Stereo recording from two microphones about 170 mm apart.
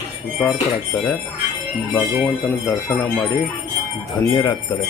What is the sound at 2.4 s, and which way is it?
Speech, 10° left (ahead or behind).